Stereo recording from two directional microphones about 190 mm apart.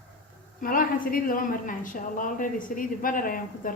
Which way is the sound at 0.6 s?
45° left (ahead or behind).